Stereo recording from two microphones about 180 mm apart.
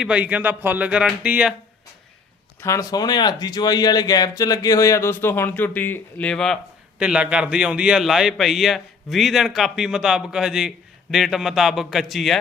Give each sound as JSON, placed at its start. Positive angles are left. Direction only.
{"t": 0.0, "sound": "a man's voice", "side_deg": -5}
{"t": 2.6, "sound": "a man's voice", "side_deg": 15}